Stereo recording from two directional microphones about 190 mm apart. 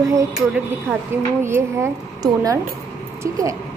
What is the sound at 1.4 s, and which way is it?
A woman's voice, 15° right (ahead or behind).